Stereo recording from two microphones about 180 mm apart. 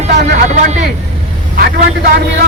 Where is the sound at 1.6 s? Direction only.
50° right (ahead or behind).